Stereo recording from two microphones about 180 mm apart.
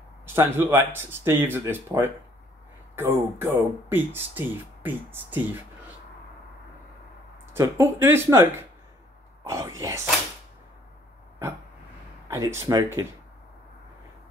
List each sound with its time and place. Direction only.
0.3 s speech: 15° right (ahead or behind)
7.5 s speech: 15° right (ahead or behind)
12.3 s speech: 15° right (ahead or behind)